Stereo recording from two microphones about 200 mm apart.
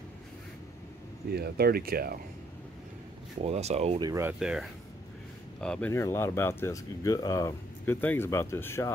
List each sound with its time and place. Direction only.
1.3 s speech: 50° right (ahead or behind)
3.4 s speech: 30° right (ahead or behind)
4.0 s speech: 15° right (ahead or behind); by 8.9 s 10° left (ahead or behind)